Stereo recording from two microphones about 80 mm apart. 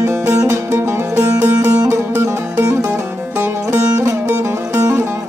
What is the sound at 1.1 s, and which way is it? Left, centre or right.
Music, centre.